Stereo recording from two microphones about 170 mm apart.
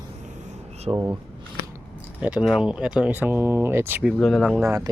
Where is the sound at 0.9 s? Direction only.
15° right (ahead or behind).